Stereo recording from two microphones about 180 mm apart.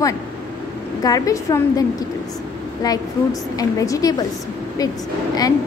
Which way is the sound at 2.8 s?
20° left (ahead or behind).